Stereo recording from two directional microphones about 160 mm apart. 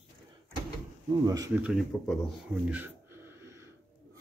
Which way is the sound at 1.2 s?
20° right (ahead or behind).